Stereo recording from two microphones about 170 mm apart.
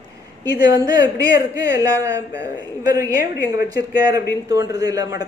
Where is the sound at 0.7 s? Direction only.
20° right (ahead or behind).